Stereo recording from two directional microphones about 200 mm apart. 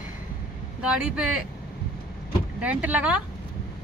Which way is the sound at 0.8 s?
5° right (ahead or behind).